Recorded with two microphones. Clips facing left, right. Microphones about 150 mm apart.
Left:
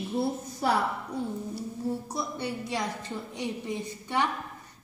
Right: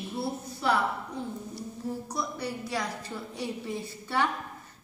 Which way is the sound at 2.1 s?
25° left (ahead or behind).